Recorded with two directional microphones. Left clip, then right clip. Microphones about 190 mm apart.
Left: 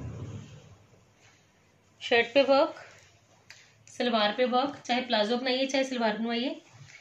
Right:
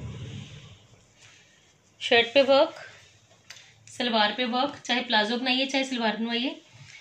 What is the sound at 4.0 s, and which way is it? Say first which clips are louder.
A woman's voice: right 1 dB; centre (ahead or behind).